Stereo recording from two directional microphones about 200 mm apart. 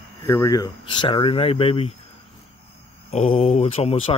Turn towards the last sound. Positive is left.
turn(degrees=30)  # may be behind; listen again after turning